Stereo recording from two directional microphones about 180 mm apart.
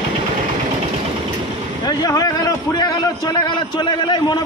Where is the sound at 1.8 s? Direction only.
20° left (ahead or behind).